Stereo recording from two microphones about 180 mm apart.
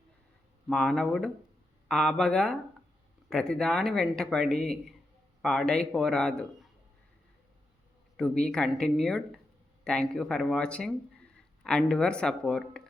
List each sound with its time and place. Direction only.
0.7 s speech: 5° left (ahead or behind)
8.1 s speech: 5° left (ahead or behind)